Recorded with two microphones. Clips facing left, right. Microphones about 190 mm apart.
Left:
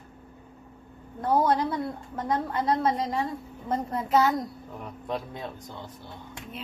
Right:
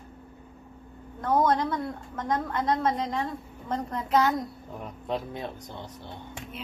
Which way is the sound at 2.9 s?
10° left (ahead or behind).